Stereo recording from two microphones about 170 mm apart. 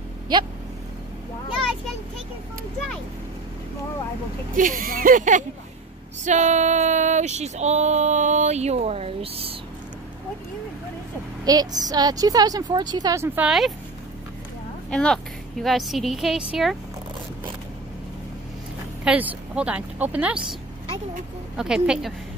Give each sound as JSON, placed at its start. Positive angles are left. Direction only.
{"t": 0.3, "sound": "a woman's voice", "side_deg": -25}
{"t": 4.6, "sound": "a sound", "side_deg": -50}
{"t": 11.4, "sound": "a woman's voice", "side_deg": -20}
{"t": 13.5, "sound": "a woman's voice", "side_deg": 0}
{"t": 14.9, "sound": "a woman's voice", "side_deg": 5}
{"t": 19.0, "sound": "speech", "side_deg": -10}
{"t": 21.5, "sound": "a woman's voice", "side_deg": -5}